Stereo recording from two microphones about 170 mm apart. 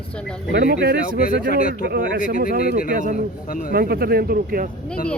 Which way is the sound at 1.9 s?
70° right (ahead or behind).